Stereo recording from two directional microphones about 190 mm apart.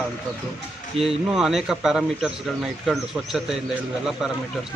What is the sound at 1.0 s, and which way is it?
Speech, 30° right (ahead or behind).